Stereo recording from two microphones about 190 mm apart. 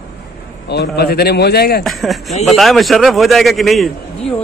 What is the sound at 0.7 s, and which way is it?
A man's voice, 60° left (ahead or behind).